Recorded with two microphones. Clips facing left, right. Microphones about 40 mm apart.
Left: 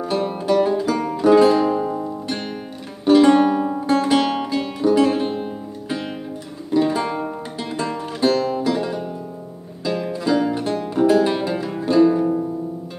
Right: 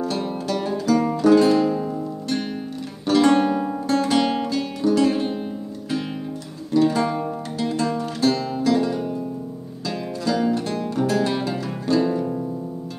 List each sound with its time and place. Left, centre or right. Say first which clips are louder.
0.0 s music: left 3 dB; centre
3.1 s music: left 4 dB; centre
6.7 s music: even; centre